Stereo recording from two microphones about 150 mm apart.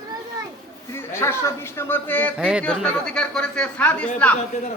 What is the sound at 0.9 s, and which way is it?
A man's voice, 15° left (ahead or behind).